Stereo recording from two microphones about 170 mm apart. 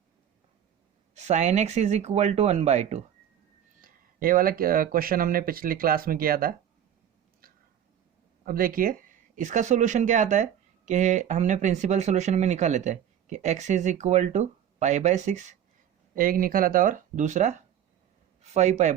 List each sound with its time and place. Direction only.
1.1 s speech: 40° right (ahead or behind)
3.8 s speech: 55° right (ahead or behind)
8.4 s speech: 60° right (ahead or behind)
16.1 s speech: 55° right (ahead or behind)